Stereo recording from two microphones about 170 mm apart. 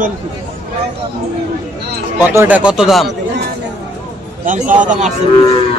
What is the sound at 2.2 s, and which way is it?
Speech, 10° right (ahead or behind).